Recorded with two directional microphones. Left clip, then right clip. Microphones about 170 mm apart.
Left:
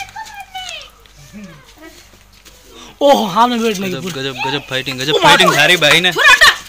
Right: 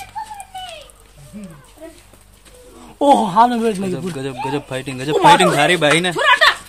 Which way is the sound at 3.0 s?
15° right (ahead or behind).